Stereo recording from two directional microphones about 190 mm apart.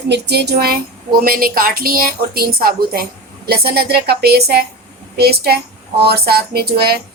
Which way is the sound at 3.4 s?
55° right (ahead or behind).